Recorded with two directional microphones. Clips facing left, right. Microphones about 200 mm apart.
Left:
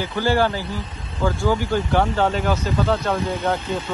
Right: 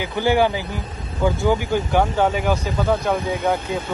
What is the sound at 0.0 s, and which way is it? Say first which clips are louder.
Speech: right 2 dB; 15° right (ahead or behind).